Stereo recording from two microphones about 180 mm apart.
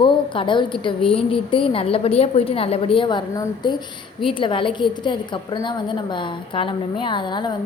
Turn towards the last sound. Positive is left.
turn(degrees=25)  # may be behind; listen again after turning